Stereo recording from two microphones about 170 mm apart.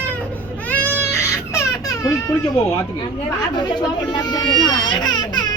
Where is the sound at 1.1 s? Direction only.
20° left (ahead or behind).